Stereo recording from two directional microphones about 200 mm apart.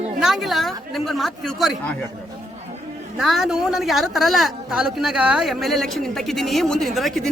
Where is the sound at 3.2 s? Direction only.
Centre (ahead or behind).